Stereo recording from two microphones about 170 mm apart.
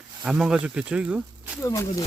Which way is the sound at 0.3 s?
5° right (ahead or behind).